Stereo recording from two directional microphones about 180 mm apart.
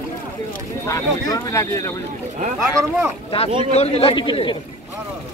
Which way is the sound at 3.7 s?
35° left (ahead or behind).